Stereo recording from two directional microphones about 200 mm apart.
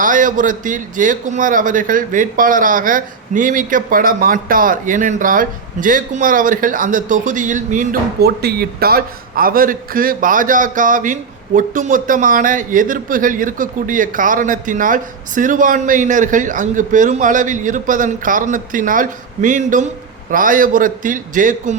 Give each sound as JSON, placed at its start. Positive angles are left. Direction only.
{"t": 0.0, "sound": "a man's voice", "side_deg": -40}